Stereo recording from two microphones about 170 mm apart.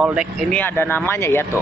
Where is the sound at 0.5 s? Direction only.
10° left (ahead or behind).